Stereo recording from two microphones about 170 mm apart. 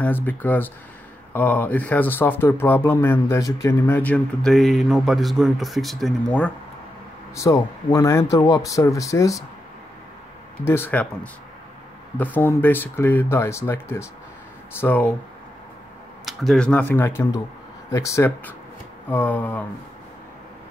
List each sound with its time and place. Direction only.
0.0 s speech: 10° left (ahead or behind)
7.3 s speech: 20° left (ahead or behind)
10.6 s speech: 15° left (ahead or behind)
12.2 s speech: 10° left (ahead or behind)
16.3 s speech: 5° left (ahead or behind)